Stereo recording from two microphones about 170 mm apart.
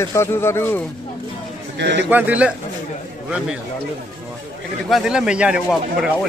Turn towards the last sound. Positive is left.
turn(degrees=-5)  # may be behind; listen again after turning